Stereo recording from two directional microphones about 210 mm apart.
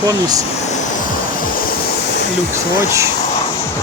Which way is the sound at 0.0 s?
15° right (ahead or behind).